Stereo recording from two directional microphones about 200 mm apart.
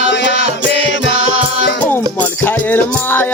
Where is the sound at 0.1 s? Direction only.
60° left (ahead or behind).